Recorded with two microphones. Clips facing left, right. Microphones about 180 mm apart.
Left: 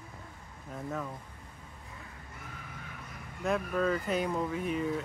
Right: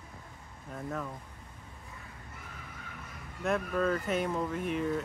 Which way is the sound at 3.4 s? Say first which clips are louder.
Even; centre (ahead or behind).